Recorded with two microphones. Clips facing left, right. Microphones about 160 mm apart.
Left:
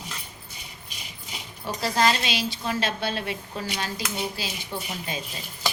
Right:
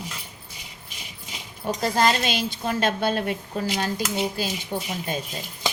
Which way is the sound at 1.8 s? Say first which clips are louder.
Right 2 dB; 50° right (ahead or behind).